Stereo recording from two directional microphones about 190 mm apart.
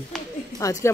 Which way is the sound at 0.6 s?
15° left (ahead or behind).